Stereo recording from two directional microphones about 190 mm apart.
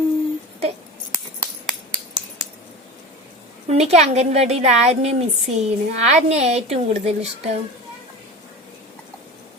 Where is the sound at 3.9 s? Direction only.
35° right (ahead or behind).